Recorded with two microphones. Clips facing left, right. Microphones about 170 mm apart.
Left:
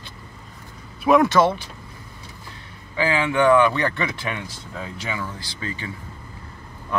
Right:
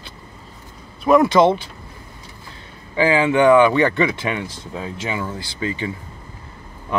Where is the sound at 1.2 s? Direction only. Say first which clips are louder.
Right 3 dB; 15° right (ahead or behind).